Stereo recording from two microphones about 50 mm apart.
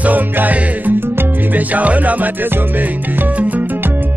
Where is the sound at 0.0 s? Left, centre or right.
Right.